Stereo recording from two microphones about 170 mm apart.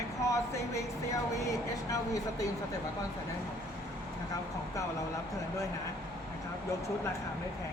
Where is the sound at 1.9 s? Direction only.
20° left (ahead or behind).